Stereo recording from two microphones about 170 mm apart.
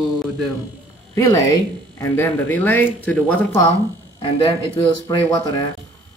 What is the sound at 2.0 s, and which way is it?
Speech, 10° left (ahead or behind).